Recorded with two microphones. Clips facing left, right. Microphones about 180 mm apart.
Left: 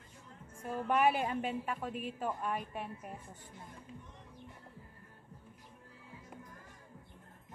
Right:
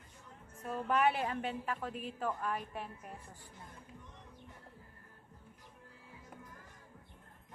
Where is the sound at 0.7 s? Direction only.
5° left (ahead or behind).